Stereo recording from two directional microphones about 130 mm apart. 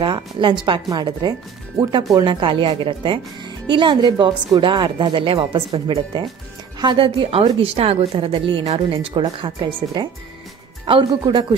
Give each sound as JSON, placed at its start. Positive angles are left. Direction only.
{"t": 0.0, "sound": "speech", "side_deg": -40}